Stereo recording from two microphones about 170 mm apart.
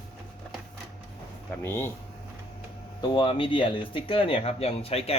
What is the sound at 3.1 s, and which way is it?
Speech, 30° left (ahead or behind).